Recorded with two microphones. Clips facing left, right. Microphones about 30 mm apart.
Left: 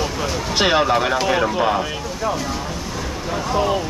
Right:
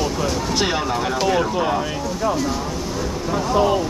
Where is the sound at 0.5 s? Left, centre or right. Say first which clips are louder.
Left 8 dB; left.